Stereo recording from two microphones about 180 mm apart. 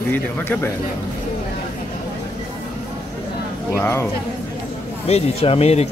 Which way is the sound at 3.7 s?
15° left (ahead or behind).